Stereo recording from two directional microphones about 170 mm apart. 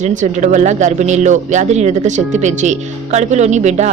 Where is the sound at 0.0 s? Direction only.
45° right (ahead or behind).